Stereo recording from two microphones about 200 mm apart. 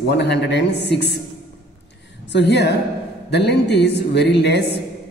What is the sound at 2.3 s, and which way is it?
A man's voice, 60° left (ahead or behind).